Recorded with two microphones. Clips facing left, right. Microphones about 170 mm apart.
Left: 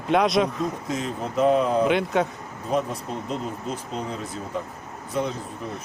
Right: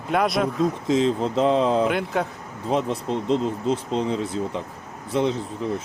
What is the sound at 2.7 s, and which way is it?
Speech, 25° right (ahead or behind).